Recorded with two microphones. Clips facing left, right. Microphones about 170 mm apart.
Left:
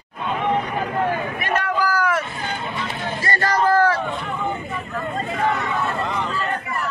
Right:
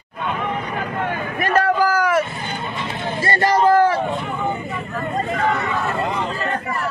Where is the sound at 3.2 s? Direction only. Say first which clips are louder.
Right 4 dB; 25° right (ahead or behind).